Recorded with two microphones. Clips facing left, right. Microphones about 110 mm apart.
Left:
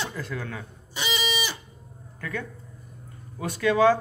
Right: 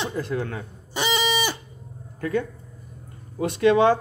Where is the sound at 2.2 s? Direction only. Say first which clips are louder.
Right 8 dB; 30° right (ahead or behind).